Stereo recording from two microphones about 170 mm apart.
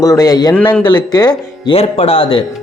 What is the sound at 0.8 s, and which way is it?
Speech, 25° left (ahead or behind).